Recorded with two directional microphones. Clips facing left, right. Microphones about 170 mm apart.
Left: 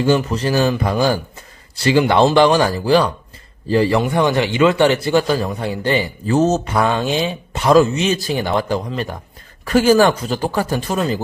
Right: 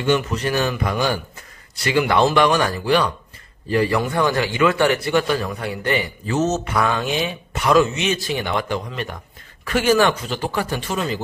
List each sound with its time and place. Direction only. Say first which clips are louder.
0.0 s a man's voice: left 3 dB; 30° left (ahead or behind)